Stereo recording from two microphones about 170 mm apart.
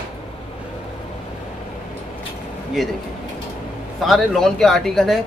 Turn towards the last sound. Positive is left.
turn(degrees=0)  # may be behind; listen again after turning